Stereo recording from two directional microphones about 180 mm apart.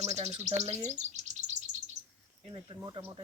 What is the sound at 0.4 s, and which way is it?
Chirp, 40° right (ahead or behind).